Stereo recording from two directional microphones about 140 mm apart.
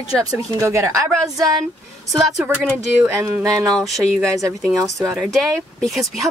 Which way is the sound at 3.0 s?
15° right (ahead or behind).